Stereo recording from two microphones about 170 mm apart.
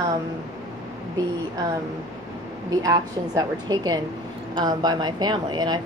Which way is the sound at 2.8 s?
20° right (ahead or behind).